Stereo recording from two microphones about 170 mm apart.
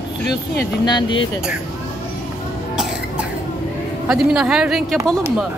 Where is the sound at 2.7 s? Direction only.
5° right (ahead or behind).